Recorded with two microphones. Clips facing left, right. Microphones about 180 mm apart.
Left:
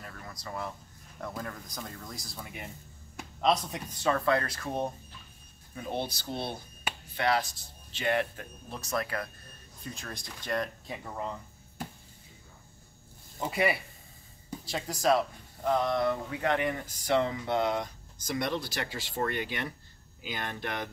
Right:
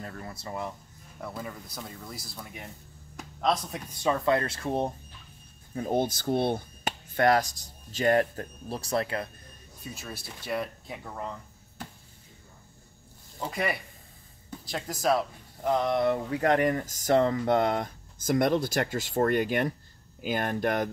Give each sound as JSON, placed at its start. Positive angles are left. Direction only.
{"t": 0.0, "sound": "a sound", "side_deg": -35}
{"t": 1.2, "sound": "speech", "side_deg": -5}
{"t": 4.0, "sound": "speech", "side_deg": -15}
{"t": 5.8, "sound": "speech", "side_deg": -45}
{"t": 9.8, "sound": "speech", "side_deg": -5}
{"t": 13.4, "sound": "speech", "side_deg": 5}
{"t": 15.6, "sound": "speech", "side_deg": -20}
{"t": 16.3, "sound": "speech", "side_deg": -40}